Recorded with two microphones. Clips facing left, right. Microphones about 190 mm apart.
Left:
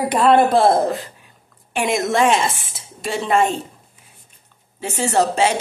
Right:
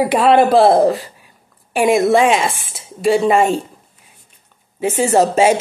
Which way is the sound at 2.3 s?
Centre (ahead or behind).